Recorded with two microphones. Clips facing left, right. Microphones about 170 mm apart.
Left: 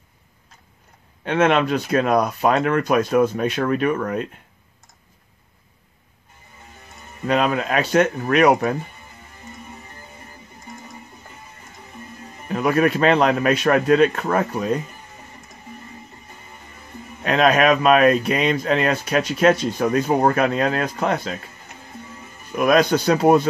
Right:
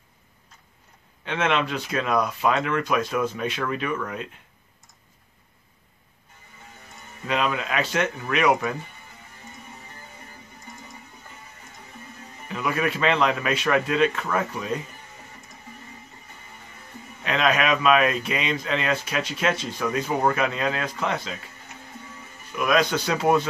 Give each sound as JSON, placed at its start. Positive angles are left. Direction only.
{"t": 1.2, "sound": "speech", "side_deg": 45}
{"t": 7.2, "sound": "speech", "side_deg": 45}
{"t": 12.4, "sound": "speech", "side_deg": 45}
{"t": 17.2, "sound": "speech", "side_deg": 45}
{"t": 22.5, "sound": "speech", "side_deg": 45}